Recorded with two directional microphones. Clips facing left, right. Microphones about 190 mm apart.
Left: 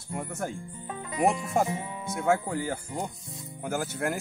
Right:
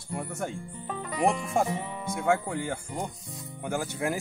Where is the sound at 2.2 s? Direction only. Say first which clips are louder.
Left 1 dB; 5° left (ahead or behind).